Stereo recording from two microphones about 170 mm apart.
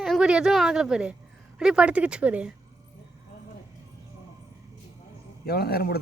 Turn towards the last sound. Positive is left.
turn(degrees=65)  # may be behind; listen again after turning